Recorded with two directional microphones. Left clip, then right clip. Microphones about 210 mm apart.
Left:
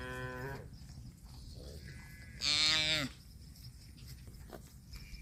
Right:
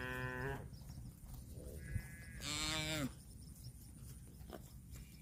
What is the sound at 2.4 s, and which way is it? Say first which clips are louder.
Livestock: left 11 dB; 50° right (ahead or behind).